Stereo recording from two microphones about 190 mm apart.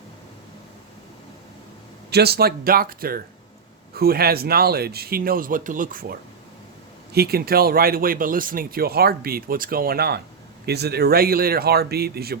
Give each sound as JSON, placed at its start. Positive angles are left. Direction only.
{"t": 2.0, "sound": "speech", "side_deg": -60}